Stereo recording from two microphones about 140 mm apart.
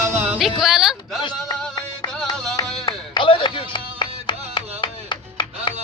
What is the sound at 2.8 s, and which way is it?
Music, 35° left (ahead or behind).